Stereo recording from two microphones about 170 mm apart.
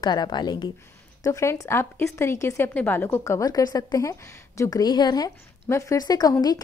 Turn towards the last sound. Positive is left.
turn(degrees=20)  # may be behind; listen again after turning